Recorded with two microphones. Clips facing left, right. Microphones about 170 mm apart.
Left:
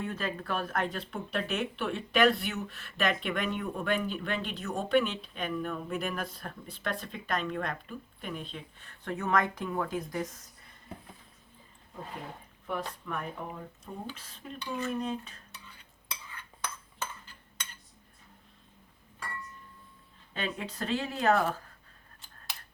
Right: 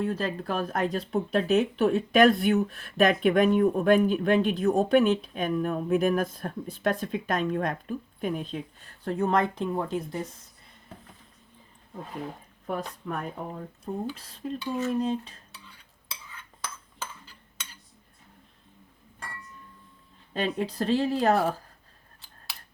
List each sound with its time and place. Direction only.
0.0 s speech: 35° right (ahead or behind)
9.0 s speech: 30° right (ahead or behind)
12.6 s speech: 35° right (ahead or behind)
20.3 s speech: 35° right (ahead or behind)